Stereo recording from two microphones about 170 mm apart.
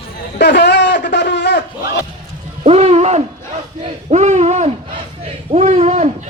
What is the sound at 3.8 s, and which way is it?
Speech, 40° right (ahead or behind).